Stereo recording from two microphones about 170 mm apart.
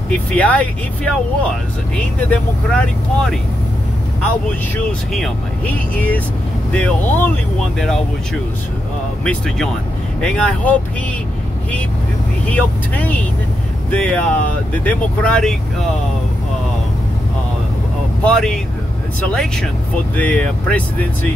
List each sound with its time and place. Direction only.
0.1 s speech: 5° left (ahead or behind)
2.1 s speech: 10° left (ahead or behind)
5.1 s speech: 5° left (ahead or behind)
9.2 s speech: 5° left (ahead or behind)
12.4 s speech: 10° left (ahead or behind)
18.2 s speech: 5° left (ahead or behind)